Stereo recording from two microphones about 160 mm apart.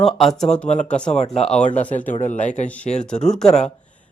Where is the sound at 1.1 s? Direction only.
45° left (ahead or behind).